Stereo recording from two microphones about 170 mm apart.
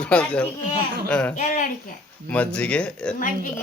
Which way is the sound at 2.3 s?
5° left (ahead or behind).